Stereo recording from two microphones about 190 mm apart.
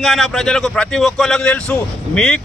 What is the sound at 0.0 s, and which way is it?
Speech, centre (ahead or behind).